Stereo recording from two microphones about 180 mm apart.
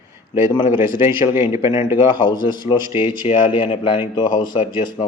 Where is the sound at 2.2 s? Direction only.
25° left (ahead or behind).